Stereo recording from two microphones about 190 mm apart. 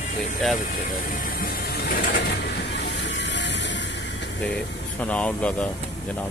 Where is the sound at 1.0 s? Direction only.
45° left (ahead or behind); by 4.2 s 65° left (ahead or behind).